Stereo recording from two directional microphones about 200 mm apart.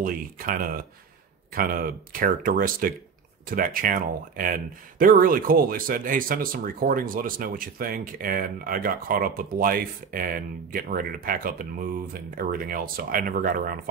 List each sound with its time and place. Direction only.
0.0 s speech: 45° right (ahead or behind)